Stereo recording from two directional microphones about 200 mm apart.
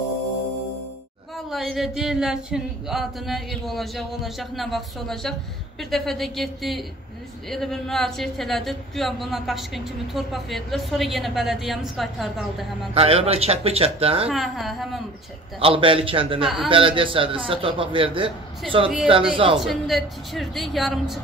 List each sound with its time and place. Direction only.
1.3 s speech: centre (ahead or behind)
12.9 s a man's voice: 30° right (ahead or behind)
14.3 s speech: centre (ahead or behind)
15.6 s a man's voice: 25° right (ahead or behind)
19.6 s speech: centre (ahead or behind)